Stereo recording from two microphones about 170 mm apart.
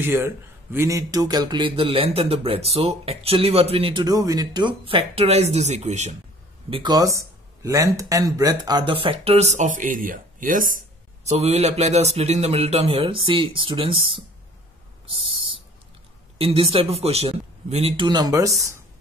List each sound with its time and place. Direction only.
0.0 s a man's voice: 15° right (ahead or behind); by 6.1 s 40° right (ahead or behind)
6.7 s a man's voice: 25° right (ahead or behind); by 10.8 s 50° right (ahead or behind)
11.2 s a man's voice: 40° right (ahead or behind)
15.0 s a sound: 30° right (ahead or behind)
16.3 s a man's voice: 35° right (ahead or behind); by 18.8 s 20° right (ahead or behind)